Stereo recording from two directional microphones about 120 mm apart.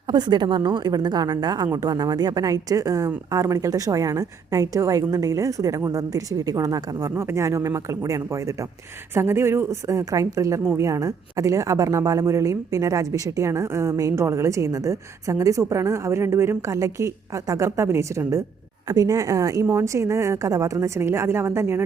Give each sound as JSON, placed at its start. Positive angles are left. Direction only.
{"t": 0.1, "sound": "a woman's voice", "side_deg": -35}